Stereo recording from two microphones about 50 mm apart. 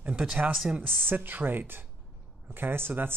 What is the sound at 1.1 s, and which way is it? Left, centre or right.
Speech, right.